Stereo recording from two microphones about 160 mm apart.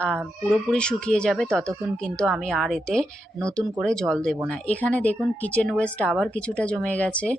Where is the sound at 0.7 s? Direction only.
5° left (ahead or behind).